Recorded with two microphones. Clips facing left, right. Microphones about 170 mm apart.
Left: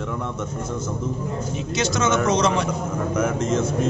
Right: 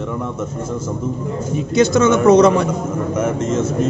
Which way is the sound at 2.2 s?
55° right (ahead or behind).